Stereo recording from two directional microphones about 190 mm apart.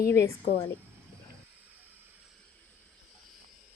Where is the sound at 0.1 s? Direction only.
15° left (ahead or behind).